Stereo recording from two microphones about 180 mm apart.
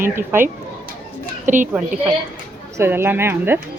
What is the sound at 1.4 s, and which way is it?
Speech, 45° right (ahead or behind).